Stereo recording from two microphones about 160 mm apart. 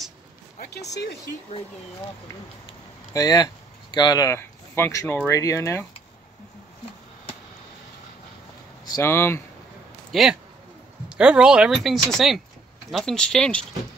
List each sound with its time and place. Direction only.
3.1 s speech: 25° left (ahead or behind)
8.8 s speech: 20° left (ahead or behind)
10.1 s speech: centre (ahead or behind)